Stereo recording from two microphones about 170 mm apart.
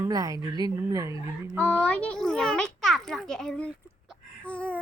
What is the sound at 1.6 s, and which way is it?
A child's voice, 10° left (ahead or behind).